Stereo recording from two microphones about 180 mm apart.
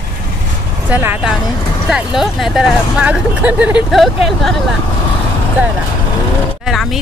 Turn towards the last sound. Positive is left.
turn(degrees=0)  # may be behind; listen again after turning